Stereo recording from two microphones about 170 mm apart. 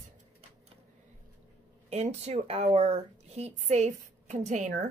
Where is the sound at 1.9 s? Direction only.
40° right (ahead or behind).